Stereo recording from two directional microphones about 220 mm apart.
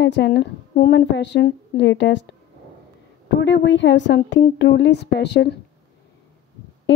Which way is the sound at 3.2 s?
55° left (ahead or behind).